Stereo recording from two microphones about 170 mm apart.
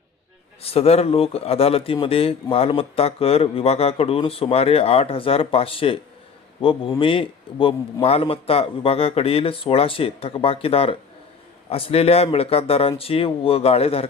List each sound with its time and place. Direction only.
0.6 s speech: 35° left (ahead or behind)